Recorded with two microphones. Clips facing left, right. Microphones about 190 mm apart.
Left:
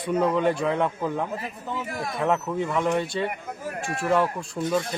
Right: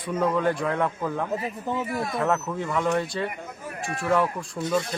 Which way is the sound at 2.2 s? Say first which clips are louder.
Left 6 dB; centre (ahead or behind).